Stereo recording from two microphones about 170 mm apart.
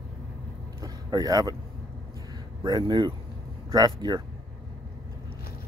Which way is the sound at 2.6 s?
25° right (ahead or behind).